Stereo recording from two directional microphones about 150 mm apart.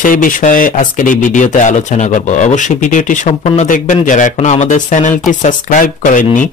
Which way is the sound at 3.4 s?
55° left (ahead or behind).